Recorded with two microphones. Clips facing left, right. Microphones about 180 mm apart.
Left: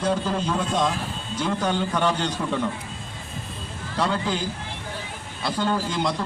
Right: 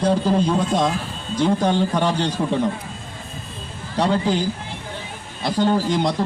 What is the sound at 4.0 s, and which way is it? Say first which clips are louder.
Speech: right 5 dB; 35° right (ahead or behind).